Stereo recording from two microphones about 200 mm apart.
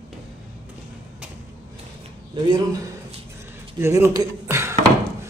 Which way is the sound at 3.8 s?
15° right (ahead or behind).